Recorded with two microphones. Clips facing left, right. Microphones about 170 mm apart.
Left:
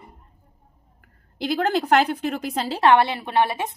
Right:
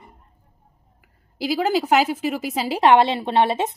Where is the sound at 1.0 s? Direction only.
5° right (ahead or behind).